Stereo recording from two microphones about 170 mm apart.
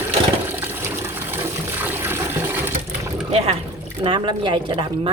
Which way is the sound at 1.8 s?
10° right (ahead or behind).